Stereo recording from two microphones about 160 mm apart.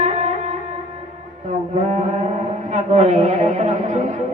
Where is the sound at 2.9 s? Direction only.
45° right (ahead or behind).